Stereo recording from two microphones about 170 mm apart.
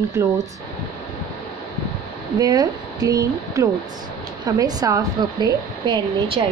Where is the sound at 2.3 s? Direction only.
20° right (ahead or behind).